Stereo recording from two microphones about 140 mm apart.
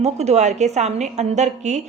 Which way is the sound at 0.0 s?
50° right (ahead or behind).